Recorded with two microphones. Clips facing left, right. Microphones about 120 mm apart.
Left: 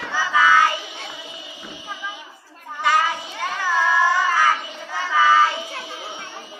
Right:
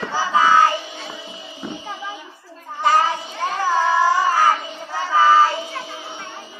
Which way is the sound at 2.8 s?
40° right (ahead or behind).